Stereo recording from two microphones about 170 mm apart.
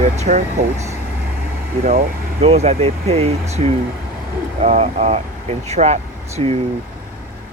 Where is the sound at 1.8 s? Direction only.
55° right (ahead or behind).